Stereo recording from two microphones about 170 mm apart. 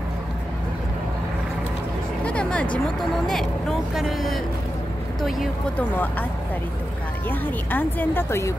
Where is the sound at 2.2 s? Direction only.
5° left (ahead or behind).